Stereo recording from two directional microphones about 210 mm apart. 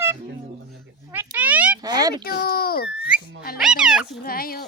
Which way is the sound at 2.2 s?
45° left (ahead or behind).